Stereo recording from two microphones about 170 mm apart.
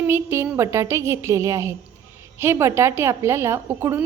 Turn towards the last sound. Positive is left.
turn(degrees=-15)  # may be behind; listen again after turning